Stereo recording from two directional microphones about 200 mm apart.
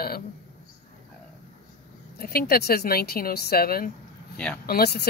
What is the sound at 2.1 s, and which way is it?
Speech, 50° left (ahead or behind).